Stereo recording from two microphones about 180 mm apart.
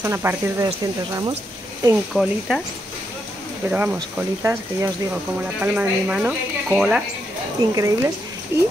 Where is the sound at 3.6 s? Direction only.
10° right (ahead or behind).